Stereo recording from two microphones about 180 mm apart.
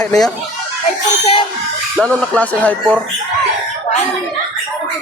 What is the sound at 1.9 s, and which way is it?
Music, 5° left (ahead or behind).